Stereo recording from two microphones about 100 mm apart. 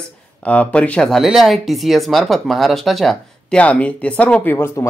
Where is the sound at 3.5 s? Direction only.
15° left (ahead or behind).